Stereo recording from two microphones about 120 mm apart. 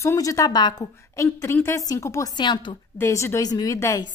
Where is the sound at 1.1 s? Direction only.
25° left (ahead or behind).